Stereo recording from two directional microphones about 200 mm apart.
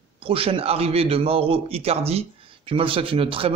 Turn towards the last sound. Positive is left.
turn(degrees=-25)  # may be behind; listen again after turning